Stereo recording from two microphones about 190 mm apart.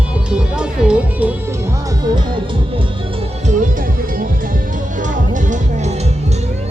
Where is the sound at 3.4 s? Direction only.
40° right (ahead or behind).